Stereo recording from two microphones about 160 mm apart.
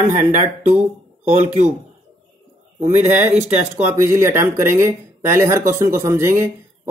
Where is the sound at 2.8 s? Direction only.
45° right (ahead or behind).